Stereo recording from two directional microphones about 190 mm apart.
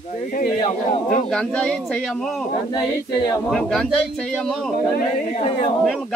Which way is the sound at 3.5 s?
Centre (ahead or behind).